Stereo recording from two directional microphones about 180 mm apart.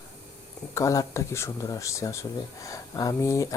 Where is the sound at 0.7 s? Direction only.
15° left (ahead or behind).